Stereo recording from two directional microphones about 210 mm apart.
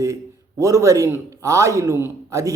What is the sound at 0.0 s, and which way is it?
A man's voice, 15° right (ahead or behind).